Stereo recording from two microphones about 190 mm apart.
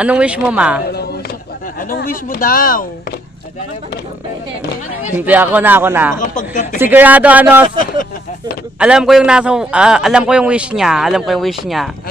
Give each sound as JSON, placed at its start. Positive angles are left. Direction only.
{"t": 0.0, "sound": "speech", "side_deg": -5}
{"t": 1.8, "sound": "speech", "side_deg": 50}
{"t": 5.1, "sound": "speech", "side_deg": -10}
{"t": 6.3, "sound": "speech", "side_deg": 45}
{"t": 6.8, "sound": "speech", "side_deg": -10}
{"t": 7.8, "sound": "speech", "side_deg": 45}
{"t": 8.7, "sound": "a man's voice", "side_deg": -5}